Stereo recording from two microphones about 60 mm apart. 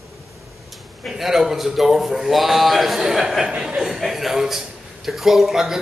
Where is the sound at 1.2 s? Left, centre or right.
Centre.